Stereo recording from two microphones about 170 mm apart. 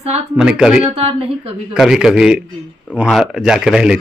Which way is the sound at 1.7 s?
5° right (ahead or behind).